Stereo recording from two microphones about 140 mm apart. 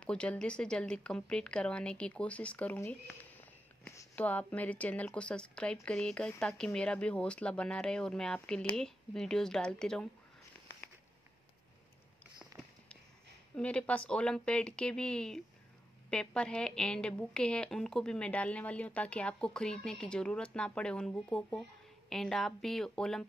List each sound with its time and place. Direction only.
0.0 s a woman's voice: 10° left (ahead or behind)
3.3 s a sound: 15° left (ahead or behind)
4.1 s a woman's voice: 10° left (ahead or behind)
13.6 s a woman's voice: 10° left (ahead or behind)